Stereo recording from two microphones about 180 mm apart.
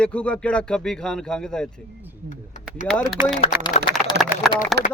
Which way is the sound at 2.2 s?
45° left (ahead or behind).